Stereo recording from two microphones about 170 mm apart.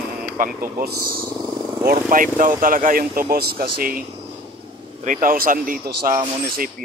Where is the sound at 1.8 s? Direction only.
55° right (ahead or behind).